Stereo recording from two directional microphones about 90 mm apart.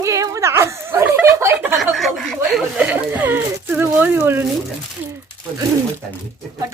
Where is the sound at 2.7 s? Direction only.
20° right (ahead or behind).